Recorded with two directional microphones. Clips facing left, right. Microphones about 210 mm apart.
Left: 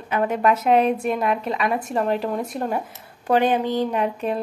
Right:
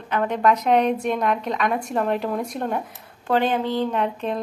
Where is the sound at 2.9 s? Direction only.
15° left (ahead or behind).